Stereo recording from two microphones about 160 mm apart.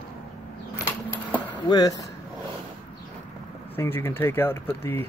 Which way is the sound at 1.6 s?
25° left (ahead or behind).